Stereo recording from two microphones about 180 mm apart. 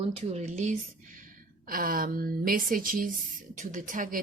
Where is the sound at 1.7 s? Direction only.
50° right (ahead or behind).